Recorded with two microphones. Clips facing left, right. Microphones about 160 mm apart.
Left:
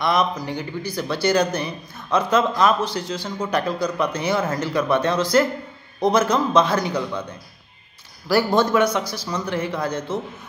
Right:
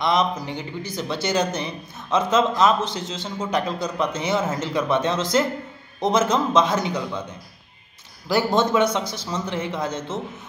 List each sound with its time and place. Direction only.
0.0 s speech: 25° right (ahead or behind)
8.3 s speech: 25° right (ahead or behind)